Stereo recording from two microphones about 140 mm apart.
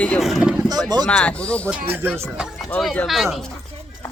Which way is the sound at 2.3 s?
5° right (ahead or behind).